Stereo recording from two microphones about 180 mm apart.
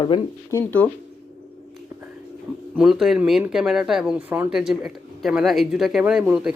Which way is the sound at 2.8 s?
Centre (ahead or behind).